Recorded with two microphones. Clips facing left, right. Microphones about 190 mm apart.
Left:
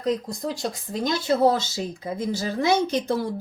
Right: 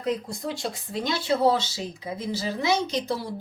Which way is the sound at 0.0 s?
40° left (ahead or behind).